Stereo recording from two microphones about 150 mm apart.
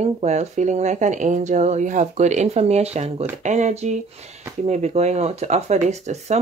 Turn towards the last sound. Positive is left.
turn(degrees=-50)  # may be behind; listen again after turning